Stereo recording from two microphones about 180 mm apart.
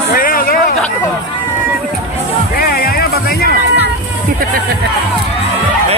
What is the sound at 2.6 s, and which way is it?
Music, 55° left (ahead or behind).